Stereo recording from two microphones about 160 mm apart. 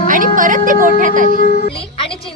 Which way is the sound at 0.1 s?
55° right (ahead or behind).